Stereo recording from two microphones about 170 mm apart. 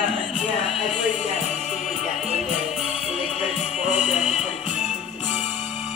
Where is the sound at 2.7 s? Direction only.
40° left (ahead or behind).